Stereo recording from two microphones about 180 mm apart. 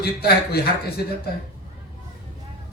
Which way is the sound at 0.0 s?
60° left (ahead or behind).